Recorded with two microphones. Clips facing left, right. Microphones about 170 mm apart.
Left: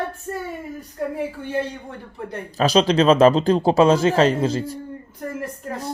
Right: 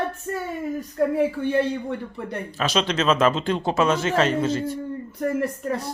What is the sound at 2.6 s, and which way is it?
Speech, 35° left (ahead or behind).